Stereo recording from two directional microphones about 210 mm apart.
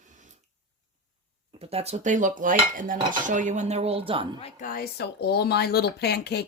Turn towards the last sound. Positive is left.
turn(degrees=50)  # may be behind; listen again after turning